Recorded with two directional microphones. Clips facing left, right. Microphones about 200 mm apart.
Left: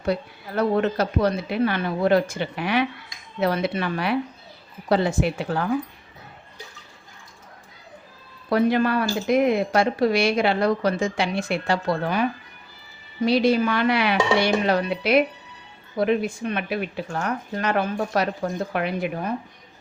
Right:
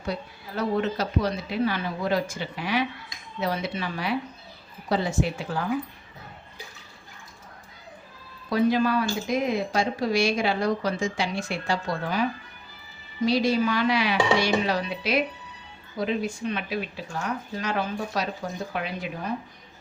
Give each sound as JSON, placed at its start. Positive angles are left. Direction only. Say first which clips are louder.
{"t": 0.0, "sound": "a woman's voice", "louder": "left 7 dB", "side_deg": 60}
{"t": 8.4, "sound": "a woman's voice", "louder": "left 2 dB", "side_deg": 60}
{"t": 13.2, "sound": "a woman's voice", "louder": "left 3 dB", "side_deg": 60}